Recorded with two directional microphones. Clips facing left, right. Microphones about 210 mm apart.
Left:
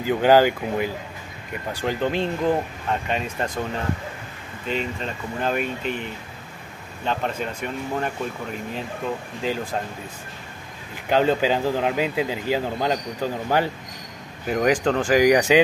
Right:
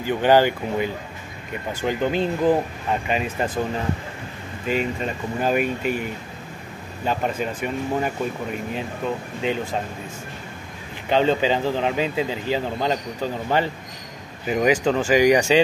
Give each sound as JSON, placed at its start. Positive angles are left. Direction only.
{"t": 0.0, "sound": "speech", "side_deg": 10}
{"t": 4.6, "sound": "speech", "side_deg": -5}
{"t": 7.1, "sound": "speech", "side_deg": -5}
{"t": 11.1, "sound": "speech", "side_deg": 5}
{"t": 14.5, "sound": "speech", "side_deg": -5}